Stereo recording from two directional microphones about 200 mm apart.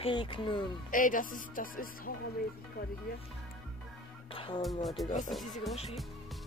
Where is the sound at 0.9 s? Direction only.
40° left (ahead or behind).